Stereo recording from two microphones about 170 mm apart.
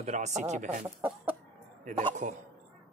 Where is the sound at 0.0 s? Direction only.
45° right (ahead or behind).